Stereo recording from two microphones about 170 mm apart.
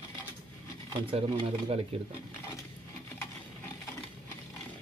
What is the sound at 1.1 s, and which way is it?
Speech, 30° right (ahead or behind).